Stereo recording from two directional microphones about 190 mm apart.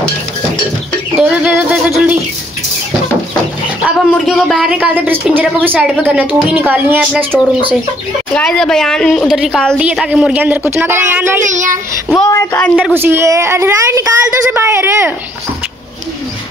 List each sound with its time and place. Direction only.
1.1 s a sound: 10° right (ahead or behind)
4.1 s a woman's voice: centre (ahead or behind)
8.4 s a woman's voice: 5° left (ahead or behind); by 11.4 s 10° right (ahead or behind)
11.4 s a child's voice: 40° right (ahead or behind)
12.3 s speech: 15° left (ahead or behind)
12.8 s a woman's voice: 10° right (ahead or behind)